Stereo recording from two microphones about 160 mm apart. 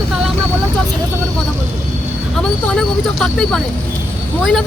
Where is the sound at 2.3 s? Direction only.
5° left (ahead or behind).